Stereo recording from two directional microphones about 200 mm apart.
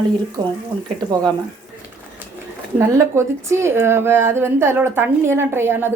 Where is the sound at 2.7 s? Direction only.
10° right (ahead or behind).